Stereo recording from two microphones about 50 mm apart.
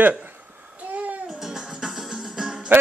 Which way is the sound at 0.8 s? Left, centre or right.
Right.